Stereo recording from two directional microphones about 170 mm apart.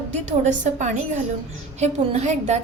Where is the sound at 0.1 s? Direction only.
45° right (ahead or behind).